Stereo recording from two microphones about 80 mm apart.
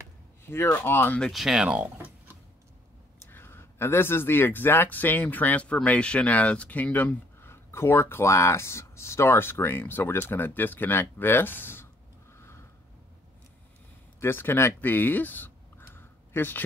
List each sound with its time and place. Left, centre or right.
0.5 s speech: left
1.3 s speech: centre
3.3 s speech: left
14.2 s speech: left